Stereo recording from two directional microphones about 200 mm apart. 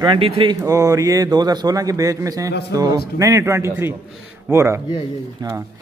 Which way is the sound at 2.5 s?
55° left (ahead or behind).